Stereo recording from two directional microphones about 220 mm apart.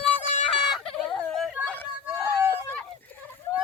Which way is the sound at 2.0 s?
10° right (ahead or behind).